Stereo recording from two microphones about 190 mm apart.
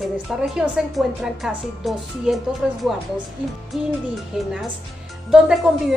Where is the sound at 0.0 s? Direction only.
5° right (ahead or behind).